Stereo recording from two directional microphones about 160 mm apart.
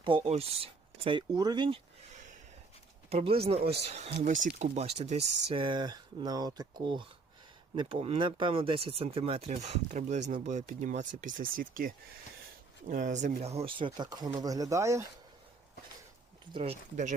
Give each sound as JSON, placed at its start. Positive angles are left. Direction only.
{"t": 0.3, "sound": "speech", "side_deg": -40}
{"t": 3.1, "sound": "speech", "side_deg": -40}
{"t": 16.5, "sound": "speech", "side_deg": -30}